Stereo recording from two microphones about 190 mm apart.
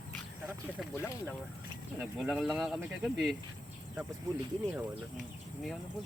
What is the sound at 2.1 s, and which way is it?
Speech, centre (ahead or behind).